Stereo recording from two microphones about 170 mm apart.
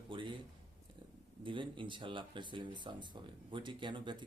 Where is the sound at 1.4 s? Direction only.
30° right (ahead or behind).